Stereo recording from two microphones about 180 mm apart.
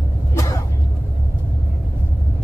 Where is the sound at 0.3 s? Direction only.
20° left (ahead or behind).